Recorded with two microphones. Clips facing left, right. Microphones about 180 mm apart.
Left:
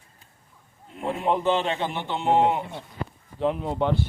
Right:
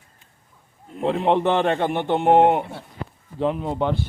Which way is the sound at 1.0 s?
70° right (ahead or behind).